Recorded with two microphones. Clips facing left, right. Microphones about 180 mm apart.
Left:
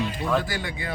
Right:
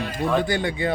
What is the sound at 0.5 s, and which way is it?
Speech, 25° right (ahead or behind).